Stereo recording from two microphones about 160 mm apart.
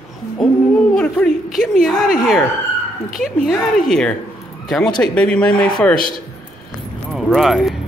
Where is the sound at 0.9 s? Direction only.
5° left (ahead or behind).